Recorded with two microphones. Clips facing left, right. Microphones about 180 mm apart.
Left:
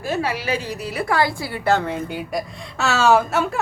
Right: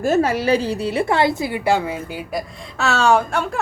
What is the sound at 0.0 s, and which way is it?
A woman's voice, 45° right (ahead or behind).